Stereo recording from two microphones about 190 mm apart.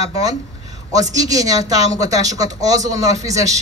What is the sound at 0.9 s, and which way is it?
Speech, 20° right (ahead or behind).